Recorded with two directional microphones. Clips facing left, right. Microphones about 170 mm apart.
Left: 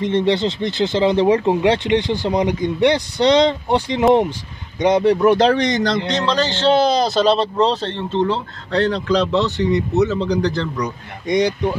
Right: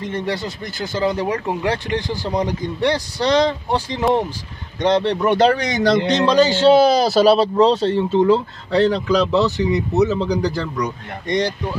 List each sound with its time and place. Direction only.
0.0 s a man's voice: 20° left (ahead or behind); by 10.9 s 5° right (ahead or behind)
11.2 s speech: 10° left (ahead or behind)